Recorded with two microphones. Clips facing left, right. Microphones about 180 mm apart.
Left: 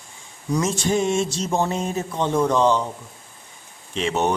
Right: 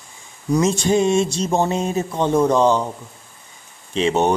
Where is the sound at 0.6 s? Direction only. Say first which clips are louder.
Right 4 dB; 20° right (ahead or behind).